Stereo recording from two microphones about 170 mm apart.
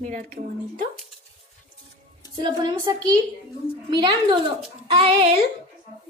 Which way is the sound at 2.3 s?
25° right (ahead or behind).